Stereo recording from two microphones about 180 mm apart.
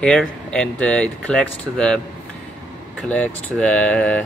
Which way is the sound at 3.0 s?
5° left (ahead or behind).